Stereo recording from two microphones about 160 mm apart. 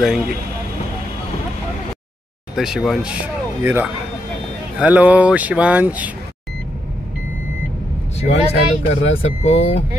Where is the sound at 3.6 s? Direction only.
15° right (ahead or behind).